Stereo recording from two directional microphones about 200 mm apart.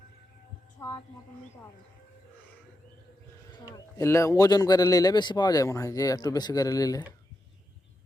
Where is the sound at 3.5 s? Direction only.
15° left (ahead or behind).